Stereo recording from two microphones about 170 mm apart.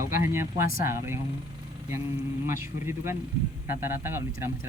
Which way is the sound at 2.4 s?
15° right (ahead or behind).